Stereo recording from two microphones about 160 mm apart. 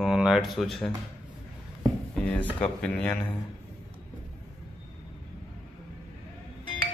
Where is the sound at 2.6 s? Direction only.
5° left (ahead or behind).